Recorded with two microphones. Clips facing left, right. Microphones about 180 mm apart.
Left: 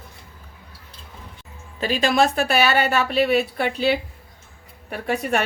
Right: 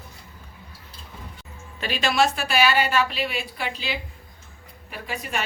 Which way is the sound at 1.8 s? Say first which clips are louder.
Left 6 dB; 40° left (ahead or behind).